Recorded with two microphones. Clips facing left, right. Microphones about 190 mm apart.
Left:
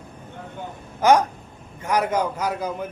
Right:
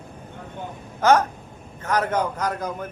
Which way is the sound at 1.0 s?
15° left (ahead or behind).